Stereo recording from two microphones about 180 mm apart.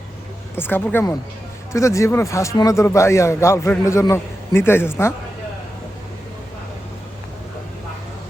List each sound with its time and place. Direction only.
0.5 s a man's voice: 10° left (ahead or behind)